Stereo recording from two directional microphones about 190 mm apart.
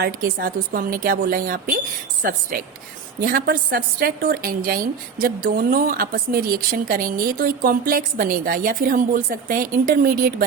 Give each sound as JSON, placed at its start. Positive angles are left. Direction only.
{"t": 0.0, "sound": "a woman's voice", "side_deg": -50}
{"t": 3.2, "sound": "a woman's voice", "side_deg": -50}